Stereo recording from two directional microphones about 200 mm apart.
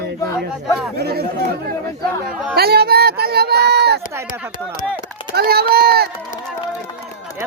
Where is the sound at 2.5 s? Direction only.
50° right (ahead or behind).